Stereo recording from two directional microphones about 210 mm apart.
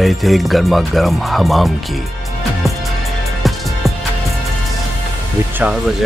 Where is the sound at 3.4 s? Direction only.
Centre (ahead or behind).